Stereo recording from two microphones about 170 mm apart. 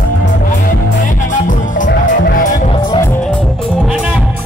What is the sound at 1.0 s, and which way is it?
Music, 50° left (ahead or behind).